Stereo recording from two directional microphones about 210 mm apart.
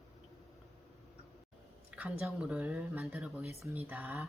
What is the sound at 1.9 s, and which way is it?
Speech, 5° right (ahead or behind).